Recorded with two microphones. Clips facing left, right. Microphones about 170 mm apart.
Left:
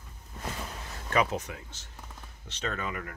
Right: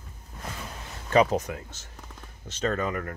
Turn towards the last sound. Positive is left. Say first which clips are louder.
# right 7 dB
turn(degrees=-45)  # may be behind; listen again after turning